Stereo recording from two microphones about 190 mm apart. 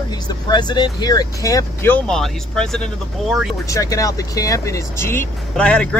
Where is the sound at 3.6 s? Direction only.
15° left (ahead or behind).